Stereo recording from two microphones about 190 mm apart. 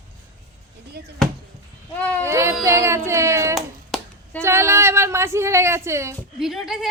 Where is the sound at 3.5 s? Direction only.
5° left (ahead or behind).